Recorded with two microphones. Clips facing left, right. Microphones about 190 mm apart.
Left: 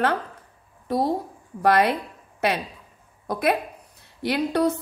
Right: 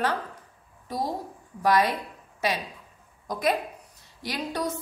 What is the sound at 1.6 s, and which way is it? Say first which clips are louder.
Speech: left 3 dB; 60° left (ahead or behind).